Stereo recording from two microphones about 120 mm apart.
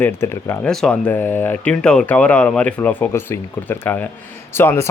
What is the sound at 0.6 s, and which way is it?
Speech, 5° left (ahead or behind).